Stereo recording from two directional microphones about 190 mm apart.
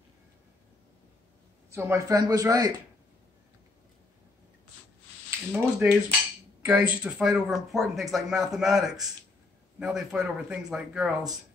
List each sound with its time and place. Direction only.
1.7 s a man's voice: 15° right (ahead or behind)
5.5 s speech: 5° right (ahead or behind)